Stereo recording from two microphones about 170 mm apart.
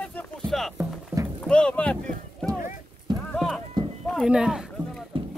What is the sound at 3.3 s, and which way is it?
Clip-clop, centre (ahead or behind).